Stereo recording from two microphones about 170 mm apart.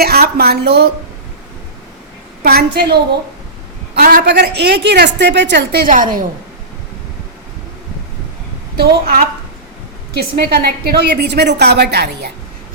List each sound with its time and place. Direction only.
0.0 s a woman's voice: 65° right (ahead or behind)
2.4 s a woman's voice: 65° right (ahead or behind); by 6.2 s 50° right (ahead or behind)
8.7 s a woman's voice: 60° right (ahead or behind)